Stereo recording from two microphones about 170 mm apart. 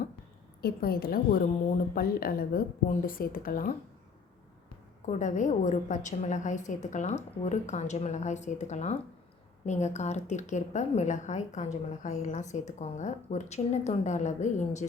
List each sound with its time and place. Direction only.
0.6 s a woman's voice: 65° left (ahead or behind)
5.0 s a woman's voice: 45° left (ahead or behind)